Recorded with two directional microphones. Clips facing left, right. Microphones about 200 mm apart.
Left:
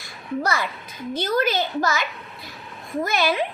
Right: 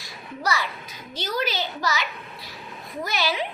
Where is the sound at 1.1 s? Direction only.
50° left (ahead or behind).